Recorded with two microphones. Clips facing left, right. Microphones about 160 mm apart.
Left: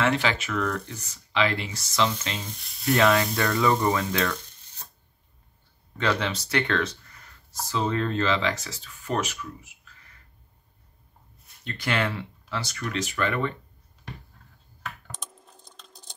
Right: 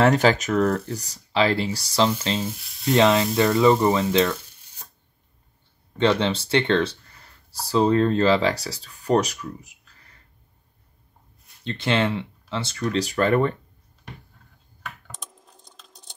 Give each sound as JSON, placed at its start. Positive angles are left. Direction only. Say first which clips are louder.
{"t": 0.0, "sound": "speech", "louder": "right 7 dB", "side_deg": -40}
{"t": 2.4, "sound": "speech", "louder": "right 9 dB", "side_deg": -5}
{"t": 2.9, "sound": "speech", "louder": "right 3 dB", "side_deg": -25}
{"t": 4.6, "sound": "a sound", "louder": "even", "side_deg": -10}
{"t": 5.9, "sound": "speech", "louder": "right 6 dB", "side_deg": -30}
{"t": 11.6, "sound": "speech", "louder": "right 5 dB", "side_deg": -25}
{"t": 15.0, "sound": "typing", "louder": "even", "side_deg": 0}